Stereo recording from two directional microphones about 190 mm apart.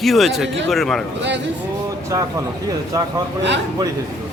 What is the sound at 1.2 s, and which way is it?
Speech, 70° right (ahead or behind).